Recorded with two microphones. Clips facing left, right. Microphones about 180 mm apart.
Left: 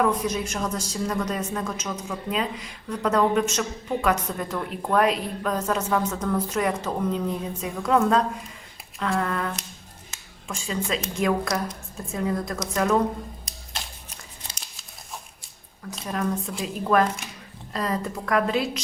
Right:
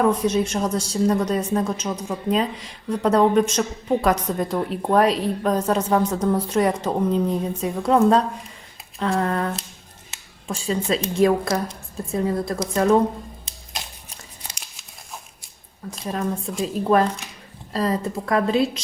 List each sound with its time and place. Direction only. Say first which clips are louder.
0.0 s a woman's voice: right 4 dB; 30° right (ahead or behind)
13.7 s a sound: right 2 dB; 15° right (ahead or behind)
15.9 s a woman's voice: right 1 dB; 30° right (ahead or behind)
17.7 s a woman's voice: right 4 dB; 30° right (ahead or behind)